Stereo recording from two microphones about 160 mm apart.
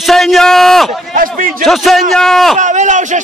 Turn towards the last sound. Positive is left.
turn(degrees=-50)  # may be behind; listen again after turning